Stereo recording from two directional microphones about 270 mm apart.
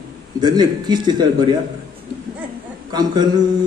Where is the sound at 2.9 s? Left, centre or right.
Centre.